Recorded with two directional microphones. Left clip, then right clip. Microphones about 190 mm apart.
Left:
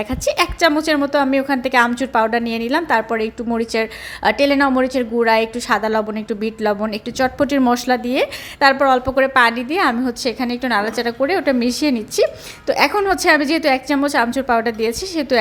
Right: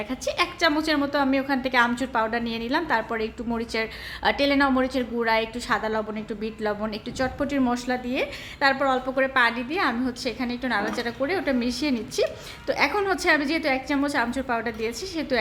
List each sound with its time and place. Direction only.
0.1 s a woman's voice: 35° left (ahead or behind)